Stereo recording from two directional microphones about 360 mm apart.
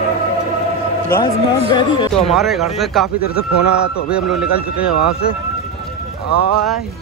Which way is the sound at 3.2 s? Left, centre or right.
Left.